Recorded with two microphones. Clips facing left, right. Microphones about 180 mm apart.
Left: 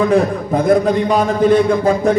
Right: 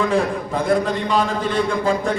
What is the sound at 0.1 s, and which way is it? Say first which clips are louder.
A man's voice: left 6 dB; 40° left (ahead or behind).